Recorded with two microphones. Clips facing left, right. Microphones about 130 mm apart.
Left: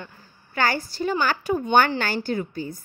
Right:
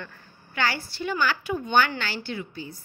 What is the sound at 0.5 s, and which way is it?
A woman's voice, 45° left (ahead or behind).